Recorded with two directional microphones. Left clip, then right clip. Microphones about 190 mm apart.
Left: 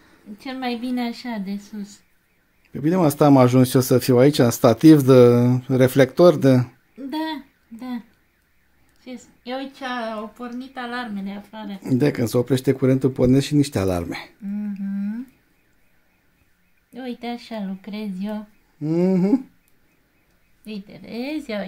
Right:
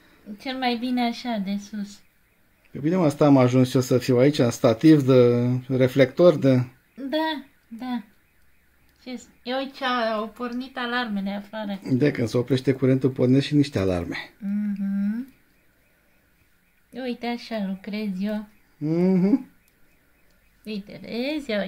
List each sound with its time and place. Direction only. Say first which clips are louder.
0.4 s speech: right 2 dB; 5° right (ahead or behind)
2.7 s speech: left 3 dB; 30° left (ahead or behind)
7.0 s a sound: right 2 dB; 10° right (ahead or behind)
9.0 s speech: right 1 dB; 15° right (ahead or behind)
11.8 s speech: left 3 dB; 20° left (ahead or behind)
14.4 s humming: right 1 dB; 15° right (ahead or behind)
16.9 s speech: right 1 dB; 10° right (ahead or behind)
18.8 s speech: left 2 dB; 25° left (ahead or behind)
20.6 s speech: right 2 dB; 10° right (ahead or behind)